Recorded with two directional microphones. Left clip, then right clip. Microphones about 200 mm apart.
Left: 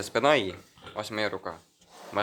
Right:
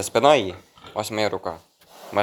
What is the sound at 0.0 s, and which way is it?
Speech, 15° right (ahead or behind).